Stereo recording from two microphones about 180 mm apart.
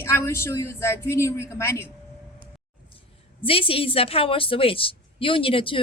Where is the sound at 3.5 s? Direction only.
30° left (ahead or behind).